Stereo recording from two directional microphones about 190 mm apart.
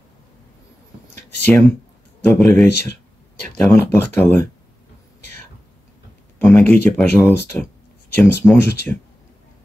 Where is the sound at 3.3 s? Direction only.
55° left (ahead or behind).